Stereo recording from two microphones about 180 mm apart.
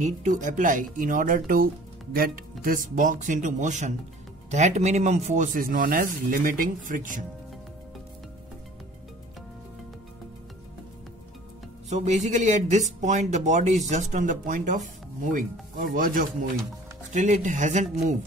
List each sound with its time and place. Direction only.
0.0 s speech: 45° right (ahead or behind)
11.9 s speech: 40° right (ahead or behind)